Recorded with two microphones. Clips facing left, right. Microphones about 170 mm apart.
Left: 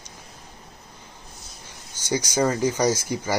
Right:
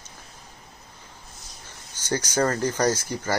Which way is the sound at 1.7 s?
10° left (ahead or behind).